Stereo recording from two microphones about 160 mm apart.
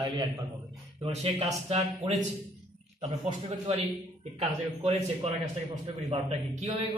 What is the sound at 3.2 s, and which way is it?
Speech, 35° right (ahead or behind).